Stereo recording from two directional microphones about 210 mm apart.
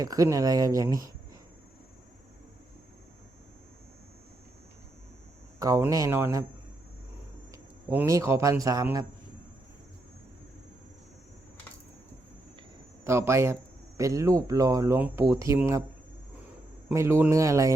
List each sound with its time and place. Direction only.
0.0 s speech: 15° right (ahead or behind)
5.5 s speech: 15° right (ahead or behind)
7.5 s speech: 15° right (ahead or behind)
13.1 s speech: 10° right (ahead or behind)
16.9 s speech: 15° right (ahead or behind)